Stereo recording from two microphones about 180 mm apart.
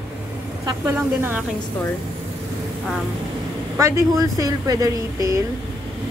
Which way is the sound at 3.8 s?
15° right (ahead or behind).